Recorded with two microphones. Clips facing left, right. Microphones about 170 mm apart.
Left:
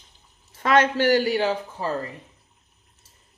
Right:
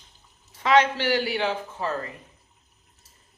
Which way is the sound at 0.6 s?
50° left (ahead or behind).